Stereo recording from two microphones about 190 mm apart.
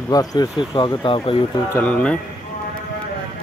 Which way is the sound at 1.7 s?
10° left (ahead or behind).